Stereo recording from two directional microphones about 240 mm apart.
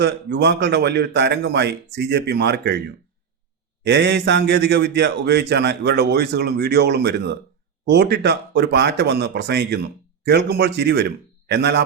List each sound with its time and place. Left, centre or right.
0.0 s a man's voice: right
3.8 s a man's voice: right